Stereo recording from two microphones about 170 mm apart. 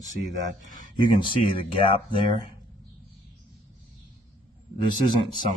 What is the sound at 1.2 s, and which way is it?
Speech, 30° left (ahead or behind).